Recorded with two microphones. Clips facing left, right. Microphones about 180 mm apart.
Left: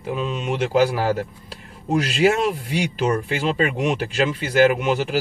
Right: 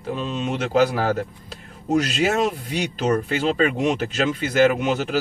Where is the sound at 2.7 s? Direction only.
10° left (ahead or behind).